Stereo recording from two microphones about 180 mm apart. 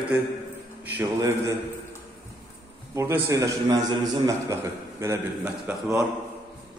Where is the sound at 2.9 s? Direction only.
15° right (ahead or behind).